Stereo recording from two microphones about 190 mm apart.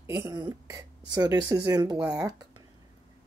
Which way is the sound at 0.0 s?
15° right (ahead or behind).